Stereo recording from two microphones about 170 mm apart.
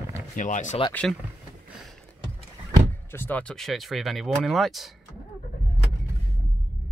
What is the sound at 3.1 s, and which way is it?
Speech, 10° left (ahead or behind).